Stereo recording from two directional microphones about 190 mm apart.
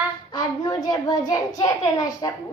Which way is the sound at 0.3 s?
20° left (ahead or behind).